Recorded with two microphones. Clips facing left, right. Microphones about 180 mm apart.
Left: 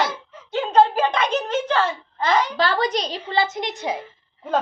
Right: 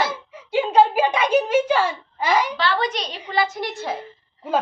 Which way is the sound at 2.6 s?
40° left (ahead or behind).